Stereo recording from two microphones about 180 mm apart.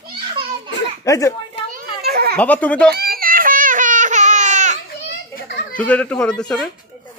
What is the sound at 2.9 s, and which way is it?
Baby cry, 55° right (ahead or behind).